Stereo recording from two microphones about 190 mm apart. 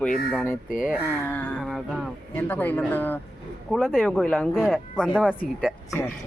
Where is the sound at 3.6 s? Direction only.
Centre (ahead or behind).